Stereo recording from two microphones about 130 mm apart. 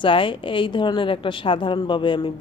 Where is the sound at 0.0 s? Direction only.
40° left (ahead or behind).